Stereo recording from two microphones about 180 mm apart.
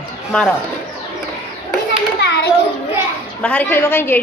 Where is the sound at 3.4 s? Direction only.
10° left (ahead or behind).